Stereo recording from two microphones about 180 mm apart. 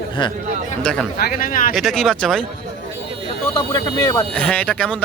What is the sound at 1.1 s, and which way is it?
Speech, 55° left (ahead or behind).